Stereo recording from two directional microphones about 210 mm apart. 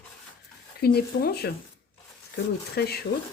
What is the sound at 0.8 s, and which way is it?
Speech, 50° left (ahead or behind).